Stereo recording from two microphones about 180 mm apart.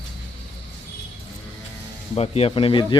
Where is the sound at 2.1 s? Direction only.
35° left (ahead or behind).